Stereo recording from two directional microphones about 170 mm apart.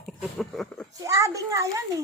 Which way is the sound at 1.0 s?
20° right (ahead or behind).